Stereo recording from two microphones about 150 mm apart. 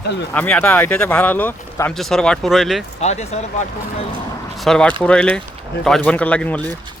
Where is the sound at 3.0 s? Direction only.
45° left (ahead or behind).